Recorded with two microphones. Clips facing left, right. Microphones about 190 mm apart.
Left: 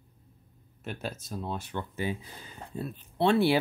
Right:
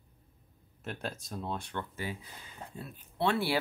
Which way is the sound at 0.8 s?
Centre (ahead or behind).